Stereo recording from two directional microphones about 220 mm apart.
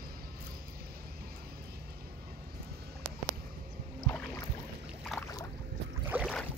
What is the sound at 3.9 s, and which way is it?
Boat, 5° left (ahead or behind).